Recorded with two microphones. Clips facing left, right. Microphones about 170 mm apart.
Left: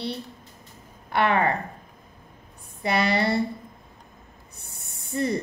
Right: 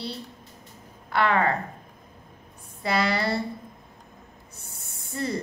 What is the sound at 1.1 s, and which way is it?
Speech, 25° left (ahead or behind).